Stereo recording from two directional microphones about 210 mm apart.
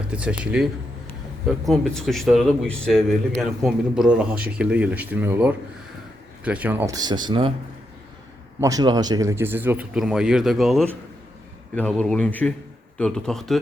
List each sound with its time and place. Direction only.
0.1 s a man's voice: 5° right (ahead or behind); by 7.5 s 20° right (ahead or behind)
8.6 s a man's voice: 15° right (ahead or behind); by 13.6 s centre (ahead or behind)